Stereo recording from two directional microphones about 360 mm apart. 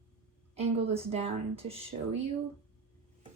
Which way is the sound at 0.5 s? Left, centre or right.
Centre.